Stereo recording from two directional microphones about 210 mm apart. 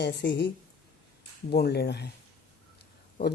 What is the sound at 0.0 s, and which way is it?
Speech, 55° left (ahead or behind).